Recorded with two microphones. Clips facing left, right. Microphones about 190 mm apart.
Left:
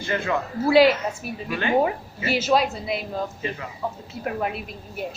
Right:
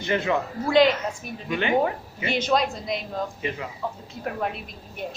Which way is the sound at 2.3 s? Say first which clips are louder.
Left 2 dB; 5° left (ahead or behind).